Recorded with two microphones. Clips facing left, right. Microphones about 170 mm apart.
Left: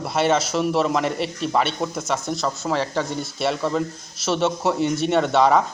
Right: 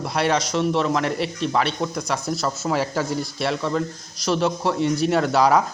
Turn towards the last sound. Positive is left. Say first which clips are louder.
# left 1 dB
turn(degrees=0)  # may be behind; listen again after turning